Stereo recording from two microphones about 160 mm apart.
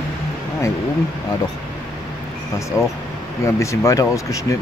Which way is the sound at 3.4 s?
20° left (ahead or behind).